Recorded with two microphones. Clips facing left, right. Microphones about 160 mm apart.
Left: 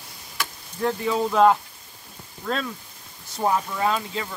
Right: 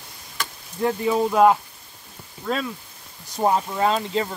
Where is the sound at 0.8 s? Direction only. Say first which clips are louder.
Right 2 dB; 15° right (ahead or behind).